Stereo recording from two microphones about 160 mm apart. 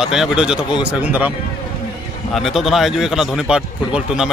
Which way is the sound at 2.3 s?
Centre (ahead or behind).